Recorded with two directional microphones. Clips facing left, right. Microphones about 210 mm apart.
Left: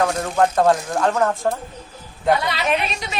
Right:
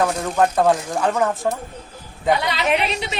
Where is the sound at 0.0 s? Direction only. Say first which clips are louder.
Even; centre (ahead or behind).